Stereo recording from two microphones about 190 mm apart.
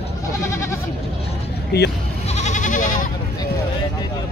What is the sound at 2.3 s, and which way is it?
Goat, 40° left (ahead or behind).